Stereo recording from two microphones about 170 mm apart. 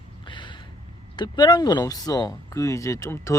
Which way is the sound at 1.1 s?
25° left (ahead or behind).